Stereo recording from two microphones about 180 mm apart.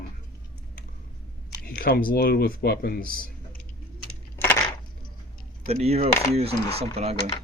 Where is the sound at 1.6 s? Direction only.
55° left (ahead or behind).